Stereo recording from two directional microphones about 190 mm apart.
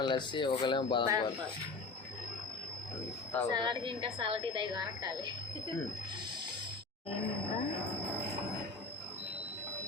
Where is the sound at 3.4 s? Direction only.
25° right (ahead or behind).